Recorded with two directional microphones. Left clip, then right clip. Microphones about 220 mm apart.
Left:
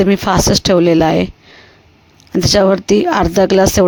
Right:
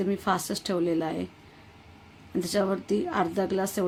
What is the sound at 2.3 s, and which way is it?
Speech, 40° left (ahead or behind).